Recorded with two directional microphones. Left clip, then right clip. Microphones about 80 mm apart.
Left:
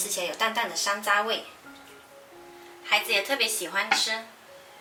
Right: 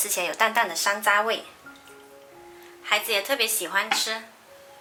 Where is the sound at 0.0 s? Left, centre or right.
Right.